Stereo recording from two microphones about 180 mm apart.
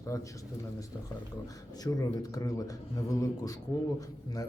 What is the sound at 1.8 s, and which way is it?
Speech, 20° left (ahead or behind).